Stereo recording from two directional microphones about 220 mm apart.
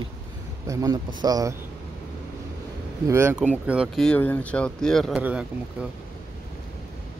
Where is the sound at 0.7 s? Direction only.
15° right (ahead or behind).